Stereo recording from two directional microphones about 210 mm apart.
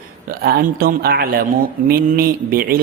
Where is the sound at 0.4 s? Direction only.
45° right (ahead or behind).